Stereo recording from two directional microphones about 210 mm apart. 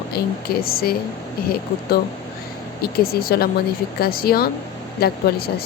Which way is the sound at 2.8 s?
45° left (ahead or behind).